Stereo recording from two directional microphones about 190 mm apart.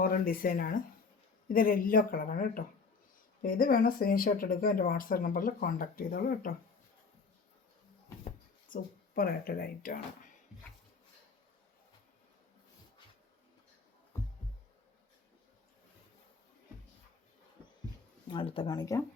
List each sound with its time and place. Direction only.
0.0 s speech: 50° left (ahead or behind)
8.7 s speech: 50° left (ahead or behind)
14.1 s music: 15° left (ahead or behind)
18.3 s speech: 25° left (ahead or behind)